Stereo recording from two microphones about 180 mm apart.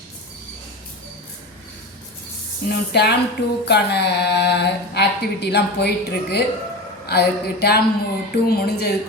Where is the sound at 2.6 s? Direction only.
65° left (ahead or behind).